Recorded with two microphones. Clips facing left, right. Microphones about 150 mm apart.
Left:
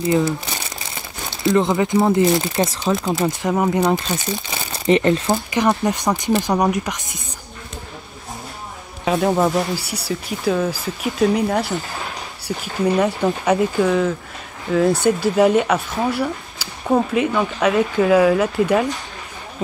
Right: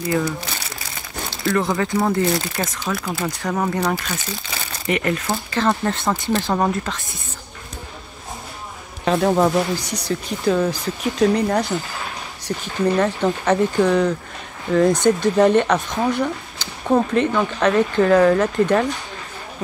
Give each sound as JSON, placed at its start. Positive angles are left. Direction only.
{"t": 0.0, "sound": "speech", "side_deg": 25}
{"t": 1.4, "sound": "speech", "side_deg": 20}
{"t": 9.0, "sound": "speech", "side_deg": 0}